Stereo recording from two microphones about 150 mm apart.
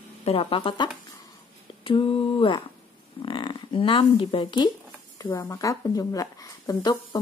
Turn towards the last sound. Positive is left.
turn(degrees=25)  # may be behind; listen again after turning